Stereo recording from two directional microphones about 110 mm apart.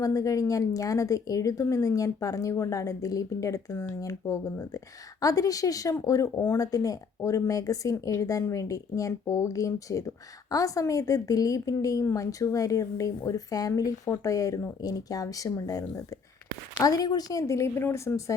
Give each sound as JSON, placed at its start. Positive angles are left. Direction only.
{"t": 0.0, "sound": "a woman's voice", "side_deg": 30}